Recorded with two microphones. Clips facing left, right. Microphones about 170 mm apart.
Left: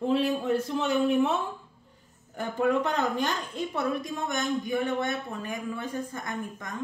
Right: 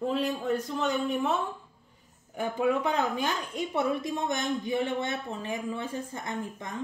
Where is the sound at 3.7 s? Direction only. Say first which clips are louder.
Right 2 dB; 25° right (ahead or behind).